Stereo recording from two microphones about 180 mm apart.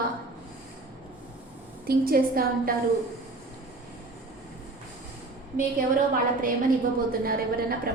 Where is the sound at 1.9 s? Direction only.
55° right (ahead or behind).